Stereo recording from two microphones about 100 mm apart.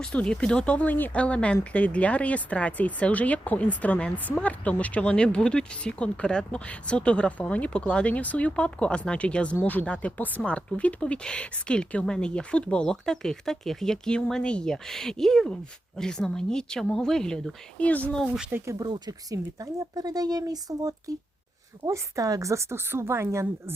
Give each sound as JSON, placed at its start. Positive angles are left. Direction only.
{"t": 0.0, "sound": "speech", "side_deg": 10}
{"t": 18.5, "sound": "speech", "side_deg": -30}
{"t": 18.9, "sound": "speech", "side_deg": -45}